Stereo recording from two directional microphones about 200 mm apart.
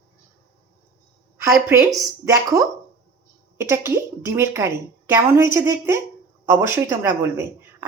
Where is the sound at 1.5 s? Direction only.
10° right (ahead or behind).